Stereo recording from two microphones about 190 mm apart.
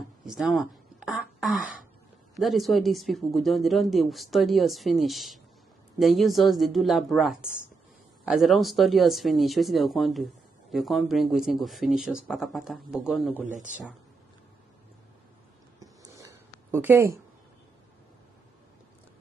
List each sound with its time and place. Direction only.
0.2 s throat clearing: centre (ahead or behind)
2.3 s speech: centre (ahead or behind)
15.8 s a sound: 20° right (ahead or behind)
16.7 s speech: 10° right (ahead or behind)